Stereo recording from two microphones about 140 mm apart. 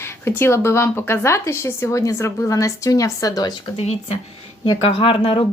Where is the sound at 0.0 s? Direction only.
15° left (ahead or behind).